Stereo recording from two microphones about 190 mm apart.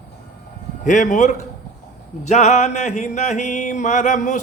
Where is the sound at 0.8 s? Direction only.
40° left (ahead or behind).